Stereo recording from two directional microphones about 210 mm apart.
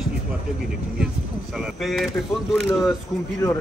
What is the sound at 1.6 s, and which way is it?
Speech, centre (ahead or behind).